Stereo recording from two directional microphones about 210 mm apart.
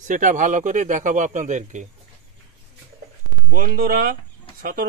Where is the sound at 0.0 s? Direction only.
35° right (ahead or behind).